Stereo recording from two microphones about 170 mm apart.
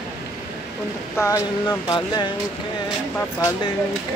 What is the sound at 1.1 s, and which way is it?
Speech, 15° left (ahead or behind).